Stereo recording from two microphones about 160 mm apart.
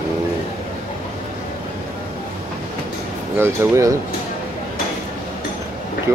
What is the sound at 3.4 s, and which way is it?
Speech, 15° right (ahead or behind).